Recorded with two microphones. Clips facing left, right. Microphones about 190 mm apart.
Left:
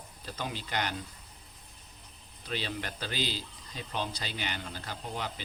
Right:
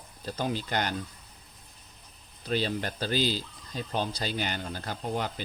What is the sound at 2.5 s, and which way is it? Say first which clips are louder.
Speech: right 7 dB; 40° right (ahead or behind).